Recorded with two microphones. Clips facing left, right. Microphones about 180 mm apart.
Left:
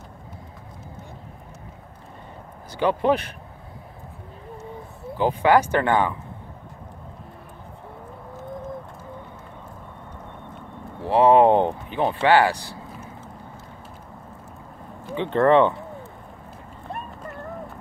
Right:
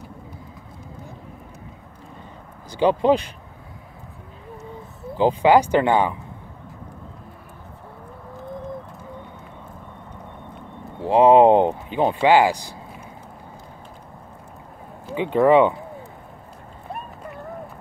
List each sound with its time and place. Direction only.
2.7 s speech: 20° right (ahead or behind)
5.1 s speech: 20° right (ahead or behind)
11.0 s speech: 15° right (ahead or behind)
15.1 s speech: 10° right (ahead or behind)